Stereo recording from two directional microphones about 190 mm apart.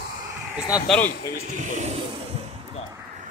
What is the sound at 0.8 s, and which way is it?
Speech, 5° left (ahead or behind).